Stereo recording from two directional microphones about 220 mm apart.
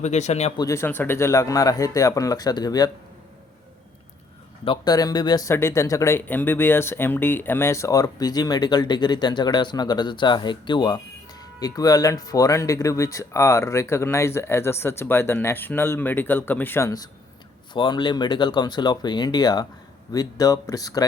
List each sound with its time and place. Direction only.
0.0 s speech: 30° left (ahead or behind)
0.6 s speech: 10° left (ahead or behind)
4.6 s speech: 20° left (ahead or behind)